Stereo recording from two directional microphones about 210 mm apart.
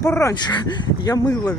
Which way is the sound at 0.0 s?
15° left (ahead or behind).